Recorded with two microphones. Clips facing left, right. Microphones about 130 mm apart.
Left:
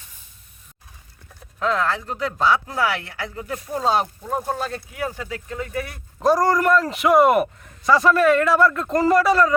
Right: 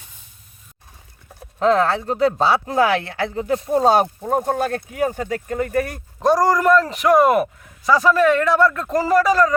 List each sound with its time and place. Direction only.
1.4 s speech: 35° right (ahead or behind)
3.8 s speech: 50° right (ahead or behind)
6.1 s a man's voice: centre (ahead or behind)